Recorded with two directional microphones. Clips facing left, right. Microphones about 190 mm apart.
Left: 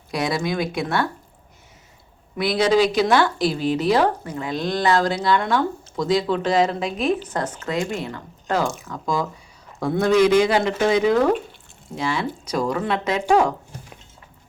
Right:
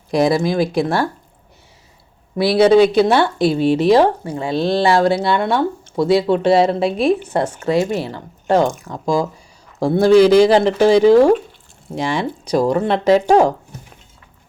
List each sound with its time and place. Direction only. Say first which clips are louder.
0.1 s speech: right 8 dB; 35° right (ahead or behind)
2.3 s speech: right 7 dB; 30° right (ahead or behind)
7.4 s a woman's voice: right 5 dB; 10° right (ahead or behind)
7.7 s speech: right 8 dB; 25° right (ahead or behind)